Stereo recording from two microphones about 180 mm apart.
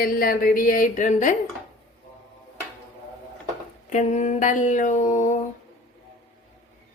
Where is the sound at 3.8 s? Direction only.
40° left (ahead or behind).